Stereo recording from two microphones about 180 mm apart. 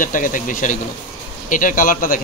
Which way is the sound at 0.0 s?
45° left (ahead or behind).